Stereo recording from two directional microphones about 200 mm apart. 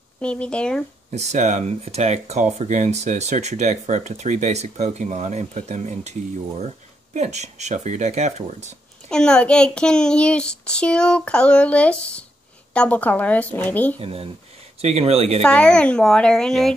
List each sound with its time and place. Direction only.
0.2 s a child's voice: 5° left (ahead or behind)
1.1 s speech: 35° right (ahead or behind)
9.1 s a child's voice: 5° left (ahead or behind)
13.9 s speech: 30° right (ahead or behind)
15.4 s a child's voice: 5° left (ahead or behind)